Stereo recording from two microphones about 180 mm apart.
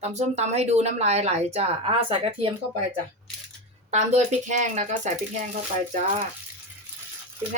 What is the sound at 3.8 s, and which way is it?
Speech, 40° right (ahead or behind).